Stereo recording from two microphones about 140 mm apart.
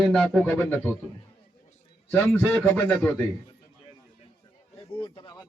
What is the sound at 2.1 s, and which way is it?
A man's voice, 15° left (ahead or behind).